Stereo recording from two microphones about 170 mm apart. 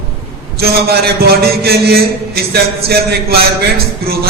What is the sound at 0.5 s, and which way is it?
A man's voice, 65° right (ahead or behind).